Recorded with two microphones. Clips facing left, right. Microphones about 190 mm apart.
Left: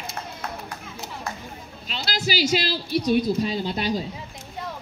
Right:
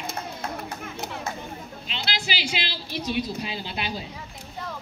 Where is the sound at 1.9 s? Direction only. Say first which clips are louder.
Left 5 dB; 40° left (ahead or behind).